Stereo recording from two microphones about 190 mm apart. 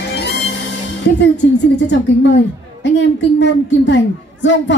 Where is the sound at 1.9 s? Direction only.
70° left (ahead or behind).